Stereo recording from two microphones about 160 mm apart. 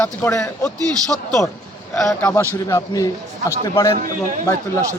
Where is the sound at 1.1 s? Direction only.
5° left (ahead or behind).